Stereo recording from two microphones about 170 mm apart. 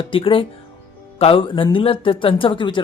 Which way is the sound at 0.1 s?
30° left (ahead or behind).